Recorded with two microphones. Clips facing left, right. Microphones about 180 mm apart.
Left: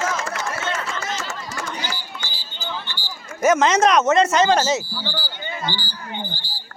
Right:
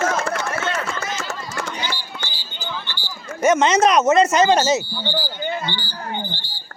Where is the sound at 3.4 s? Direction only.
Centre (ahead or behind).